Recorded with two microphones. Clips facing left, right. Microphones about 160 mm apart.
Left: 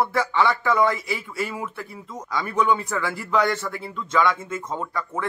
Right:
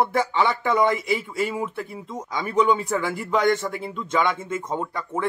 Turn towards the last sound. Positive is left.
turn(degrees=-20)  # may be behind; listen again after turning